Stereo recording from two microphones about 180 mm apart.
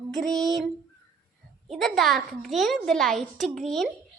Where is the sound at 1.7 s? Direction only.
Centre (ahead or behind).